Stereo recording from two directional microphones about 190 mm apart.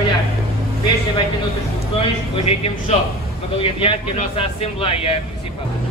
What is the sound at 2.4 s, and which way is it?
A man's voice, 35° left (ahead or behind).